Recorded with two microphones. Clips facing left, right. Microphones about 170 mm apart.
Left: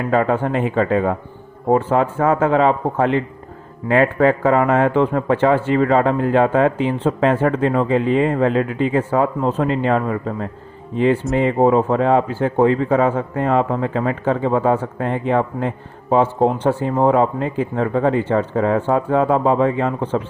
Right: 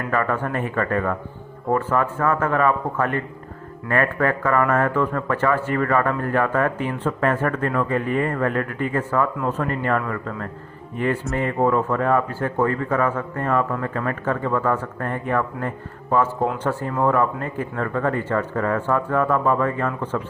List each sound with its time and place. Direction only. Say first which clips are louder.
0.1 s speech: left 6 dB; 25° left (ahead or behind)